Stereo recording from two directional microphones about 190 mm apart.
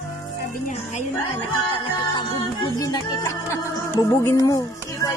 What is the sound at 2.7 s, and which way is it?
Music, 20° left (ahead or behind).